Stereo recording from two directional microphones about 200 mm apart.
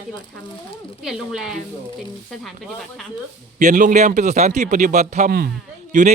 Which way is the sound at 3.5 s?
40° right (ahead or behind).